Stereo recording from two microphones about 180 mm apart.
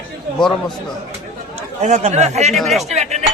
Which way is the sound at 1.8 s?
40° right (ahead or behind).